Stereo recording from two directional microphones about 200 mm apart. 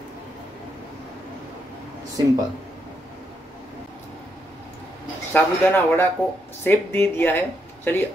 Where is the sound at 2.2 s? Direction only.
20° right (ahead or behind).